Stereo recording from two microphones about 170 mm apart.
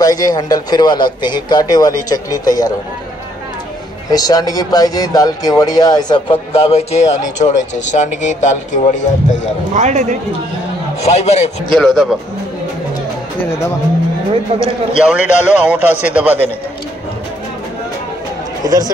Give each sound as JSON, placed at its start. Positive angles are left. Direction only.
{"t": 0.0, "sound": "speech", "side_deg": 20}
{"t": 4.1, "sound": "speech", "side_deg": 20}
{"t": 9.8, "sound": "speech", "side_deg": -45}
{"t": 11.2, "sound": "speech", "side_deg": 40}
{"t": 11.7, "sound": "speech", "side_deg": 5}
{"t": 15.0, "sound": "a man's voice", "side_deg": -5}
{"t": 18.6, "sound": "chatter", "side_deg": -20}